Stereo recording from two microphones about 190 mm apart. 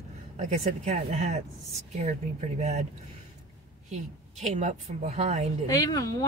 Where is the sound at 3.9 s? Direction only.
40° right (ahead or behind).